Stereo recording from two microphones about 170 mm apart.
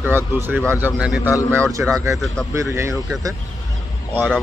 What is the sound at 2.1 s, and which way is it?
Speech, centre (ahead or behind).